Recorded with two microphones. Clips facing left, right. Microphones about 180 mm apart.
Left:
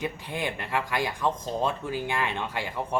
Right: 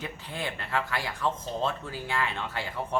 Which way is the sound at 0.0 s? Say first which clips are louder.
Left 4 dB; 15° left (ahead or behind).